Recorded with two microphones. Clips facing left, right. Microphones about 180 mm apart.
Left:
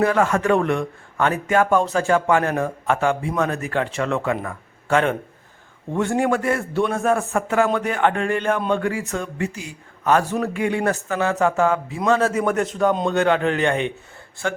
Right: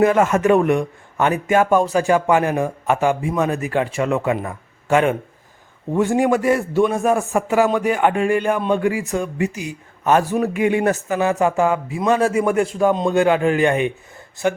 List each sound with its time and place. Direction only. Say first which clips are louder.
0.0 s a man's voice: right 4 dB; 20° right (ahead or behind)
6.6 s speech: right 4 dB; centre (ahead or behind)
6.9 s a man's voice: right 2 dB; 15° right (ahead or behind)